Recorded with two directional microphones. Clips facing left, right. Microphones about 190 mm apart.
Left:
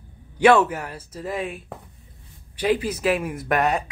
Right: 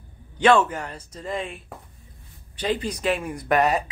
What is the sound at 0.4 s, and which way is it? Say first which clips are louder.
Speech: left 2 dB; 10° left (ahead or behind).